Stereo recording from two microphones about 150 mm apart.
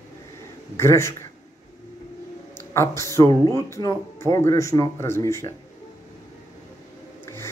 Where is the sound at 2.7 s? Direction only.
20° left (ahead or behind).